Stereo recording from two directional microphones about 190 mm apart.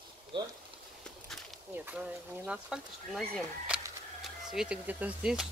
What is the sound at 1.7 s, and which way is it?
Speech, 10° right (ahead or behind).